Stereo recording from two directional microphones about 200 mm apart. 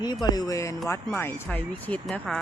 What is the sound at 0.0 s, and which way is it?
Speech, 20° left (ahead or behind).